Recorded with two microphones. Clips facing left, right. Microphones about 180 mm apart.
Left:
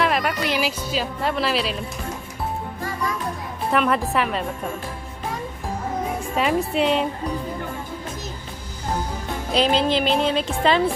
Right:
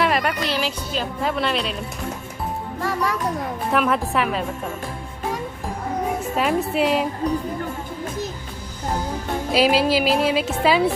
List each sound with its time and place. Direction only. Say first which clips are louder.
0.0 s music: right 1 dB; centre (ahead or behind)
0.4 s a woman's voice: left 1 dB; 10° left (ahead or behind)
2.8 s music: right 5 dB; 70° right (ahead or behind)
3.7 s a woman's voice: left 1 dB; centre (ahead or behind)
6.3 s a woman's voice: left 1 dB; centre (ahead or behind)
9.5 s a woman's voice: right 2 dB; 5° right (ahead or behind)